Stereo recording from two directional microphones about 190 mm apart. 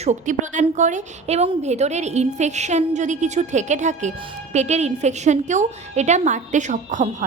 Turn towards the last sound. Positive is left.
turn(degrees=-40)  # may be behind; listen again after turning